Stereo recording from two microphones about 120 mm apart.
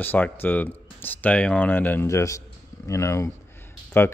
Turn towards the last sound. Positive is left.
turn(degrees=15)  # may be behind; listen again after turning